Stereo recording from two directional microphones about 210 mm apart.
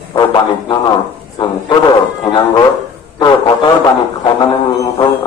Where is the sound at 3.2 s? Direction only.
20° left (ahead or behind).